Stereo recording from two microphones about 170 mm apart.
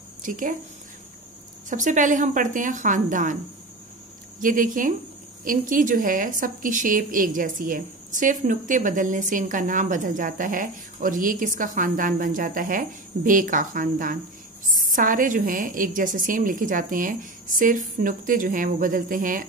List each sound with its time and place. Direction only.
0.2 s speech: 50° right (ahead or behind)
1.7 s speech: 50° right (ahead or behind)
4.4 s speech: 50° right (ahead or behind)